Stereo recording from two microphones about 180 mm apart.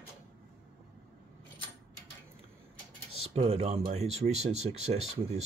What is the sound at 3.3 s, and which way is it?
Speech, 35° right (ahead or behind).